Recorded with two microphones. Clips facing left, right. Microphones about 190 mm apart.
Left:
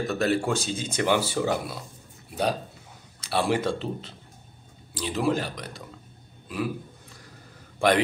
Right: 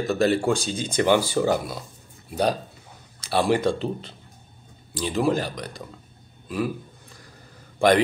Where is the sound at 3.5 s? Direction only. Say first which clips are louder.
Right 4 dB; centre (ahead or behind).